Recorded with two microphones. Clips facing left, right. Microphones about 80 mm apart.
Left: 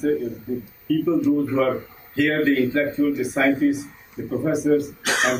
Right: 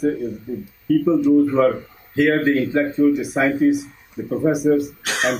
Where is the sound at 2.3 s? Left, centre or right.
Centre.